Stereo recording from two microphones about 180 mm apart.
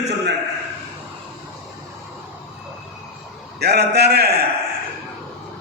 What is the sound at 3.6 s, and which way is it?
Speech, 65° right (ahead or behind).